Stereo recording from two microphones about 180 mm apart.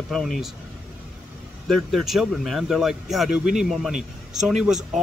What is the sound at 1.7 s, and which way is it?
Speech, centre (ahead or behind).